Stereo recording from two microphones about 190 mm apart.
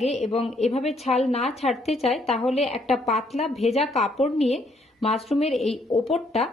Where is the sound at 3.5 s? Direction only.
Centre (ahead or behind).